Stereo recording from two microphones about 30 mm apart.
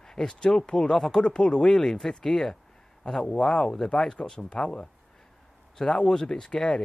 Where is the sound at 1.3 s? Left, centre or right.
Left.